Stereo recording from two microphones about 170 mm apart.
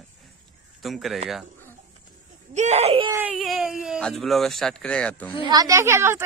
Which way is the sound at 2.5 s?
40° right (ahead or behind).